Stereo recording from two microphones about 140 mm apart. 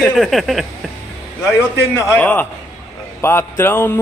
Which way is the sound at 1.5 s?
20° left (ahead or behind).